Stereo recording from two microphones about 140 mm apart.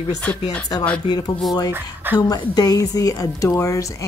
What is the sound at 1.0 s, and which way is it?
Speech, 30° left (ahead or behind).